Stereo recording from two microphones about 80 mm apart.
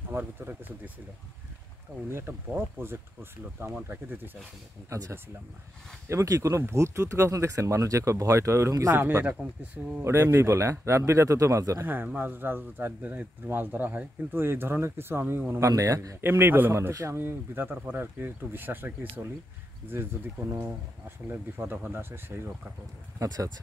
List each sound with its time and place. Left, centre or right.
0.1 s speech: right
2.0 s speech: right
4.8 s speech: right
9.4 s speech: centre
10.0 s speech: right
11.8 s speech: right
15.5 s speech: right
16.2 s speech: right
21.3 s speech: right
23.1 s speech: right